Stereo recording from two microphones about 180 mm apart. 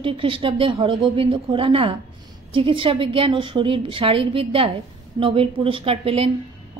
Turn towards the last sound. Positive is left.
turn(degrees=-35)  # may be behind; listen again after turning